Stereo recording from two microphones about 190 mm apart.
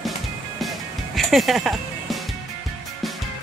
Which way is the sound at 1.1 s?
Centre (ahead or behind).